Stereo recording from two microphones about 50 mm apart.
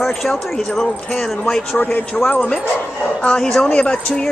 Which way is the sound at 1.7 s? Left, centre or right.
Left.